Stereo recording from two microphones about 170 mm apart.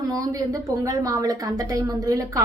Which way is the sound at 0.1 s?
20° right (ahead or behind).